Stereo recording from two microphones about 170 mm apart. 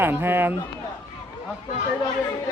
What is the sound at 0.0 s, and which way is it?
Speech, 10° right (ahead or behind).